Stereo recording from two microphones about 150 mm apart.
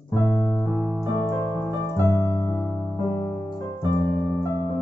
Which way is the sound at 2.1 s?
20° left (ahead or behind).